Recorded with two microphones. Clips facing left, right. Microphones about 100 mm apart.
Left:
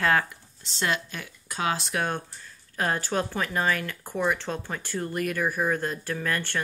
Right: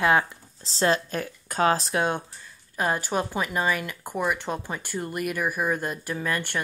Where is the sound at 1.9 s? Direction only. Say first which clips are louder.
Right 3 dB; 20° right (ahead or behind).